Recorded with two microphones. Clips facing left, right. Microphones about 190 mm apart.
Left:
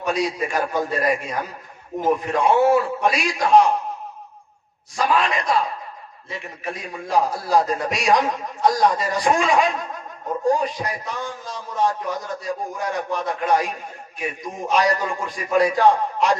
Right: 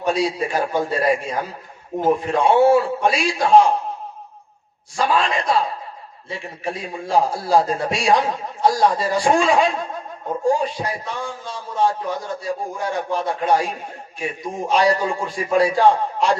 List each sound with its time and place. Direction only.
0.0 s a man's voice: 30° right (ahead or behind)
4.9 s a man's voice: 30° right (ahead or behind)